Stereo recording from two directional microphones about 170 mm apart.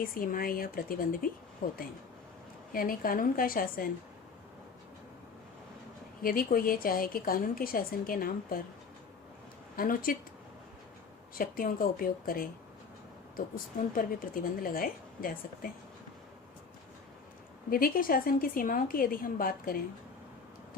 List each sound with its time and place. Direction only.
0.0 s a woman's voice: 55° left (ahead or behind)
6.2 s a woman's voice: 55° left (ahead or behind)
9.7 s a woman's voice: 55° left (ahead or behind)
11.3 s a woman's voice: 55° left (ahead or behind)
13.9 s a woman's voice: 55° left (ahead or behind)
17.7 s a woman's voice: 60° left (ahead or behind)